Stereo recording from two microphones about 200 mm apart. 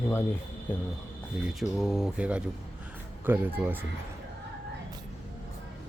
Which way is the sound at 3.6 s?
10° right (ahead or behind).